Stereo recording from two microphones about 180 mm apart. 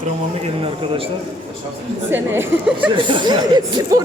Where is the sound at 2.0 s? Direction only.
10° right (ahead or behind).